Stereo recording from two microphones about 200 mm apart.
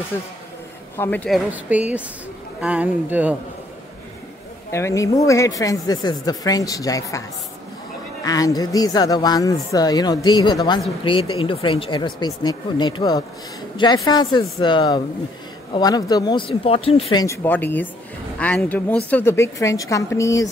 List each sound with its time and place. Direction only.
0.1 s speech: 10° left (ahead or behind)
1.5 s speech: 5° right (ahead or behind)
4.6 s speech: 15° left (ahead or behind)